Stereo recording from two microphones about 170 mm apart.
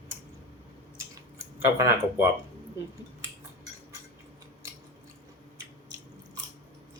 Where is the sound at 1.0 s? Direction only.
15° right (ahead or behind).